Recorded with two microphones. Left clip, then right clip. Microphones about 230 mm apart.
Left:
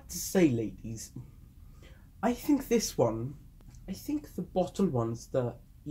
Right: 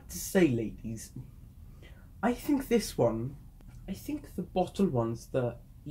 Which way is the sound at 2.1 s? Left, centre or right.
Left.